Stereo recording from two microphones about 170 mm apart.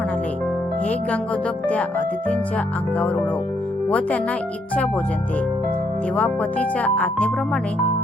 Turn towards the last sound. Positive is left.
turn(degrees=10)  # may be behind; listen again after turning